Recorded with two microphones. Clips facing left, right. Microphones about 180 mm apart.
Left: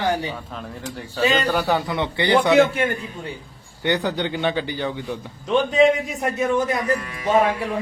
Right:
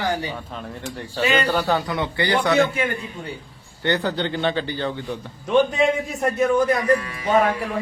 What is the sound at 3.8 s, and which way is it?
A man's voice, 15° left (ahead or behind).